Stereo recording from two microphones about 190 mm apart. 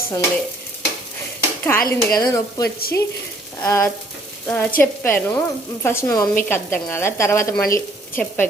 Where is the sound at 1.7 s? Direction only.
15° left (ahead or behind).